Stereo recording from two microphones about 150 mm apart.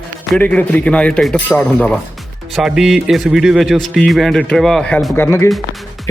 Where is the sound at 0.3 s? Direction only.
10° left (ahead or behind).